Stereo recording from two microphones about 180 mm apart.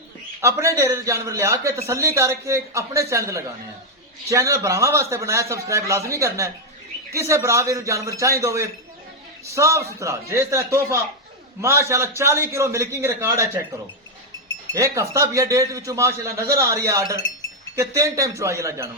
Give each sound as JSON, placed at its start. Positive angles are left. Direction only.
{"t": 0.4, "sound": "a man's voice", "side_deg": -15}
{"t": 14.7, "sound": "a man's voice", "side_deg": -15}